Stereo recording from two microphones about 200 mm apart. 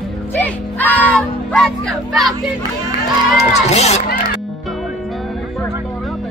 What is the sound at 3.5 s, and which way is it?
Crowd, 35° left (ahead or behind).